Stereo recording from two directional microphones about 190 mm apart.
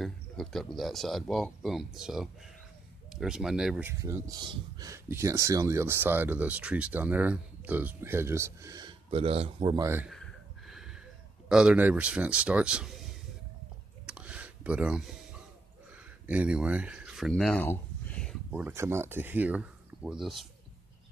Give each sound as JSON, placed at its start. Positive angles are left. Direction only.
{"t": 0.0, "sound": "speech", "side_deg": 0}
{"t": 4.0, "sound": "speech", "side_deg": -20}
{"t": 9.8, "sound": "speech", "side_deg": -10}
{"t": 10.7, "sound": "a sound", "side_deg": -5}
{"t": 11.4, "sound": "speech", "side_deg": -5}
{"t": 14.0, "sound": "a sound", "side_deg": -5}
{"t": 16.3, "sound": "speech", "side_deg": -5}
{"t": 18.5, "sound": "speech", "side_deg": -10}